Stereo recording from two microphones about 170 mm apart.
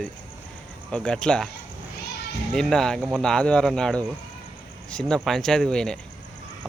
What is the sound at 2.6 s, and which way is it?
Speech, 5° left (ahead or behind).